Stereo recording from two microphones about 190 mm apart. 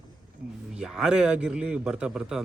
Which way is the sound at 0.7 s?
5° right (ahead or behind).